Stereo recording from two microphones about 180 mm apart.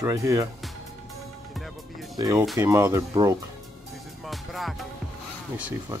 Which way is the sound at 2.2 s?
20° right (ahead or behind).